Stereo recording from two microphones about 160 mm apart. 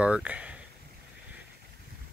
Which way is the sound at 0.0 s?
10° right (ahead or behind).